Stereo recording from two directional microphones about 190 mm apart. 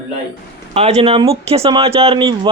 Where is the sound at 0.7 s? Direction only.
35° right (ahead or behind).